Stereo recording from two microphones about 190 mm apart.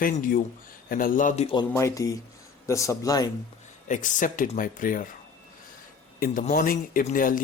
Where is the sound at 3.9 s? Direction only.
40° left (ahead or behind).